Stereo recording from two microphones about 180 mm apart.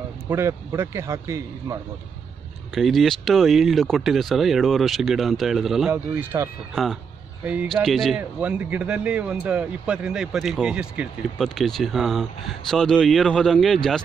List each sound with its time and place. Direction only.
0.3 s a man's voice: 15° right (ahead or behind)
2.7 s speech: centre (ahead or behind)
6.7 s speech: centre (ahead or behind)